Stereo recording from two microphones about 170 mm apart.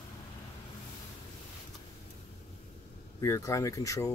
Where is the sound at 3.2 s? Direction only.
20° left (ahead or behind).